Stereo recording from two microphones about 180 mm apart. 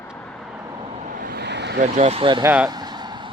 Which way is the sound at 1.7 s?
40° right (ahead or behind).